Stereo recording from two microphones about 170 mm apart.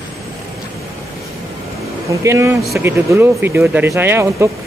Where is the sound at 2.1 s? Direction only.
15° right (ahead or behind).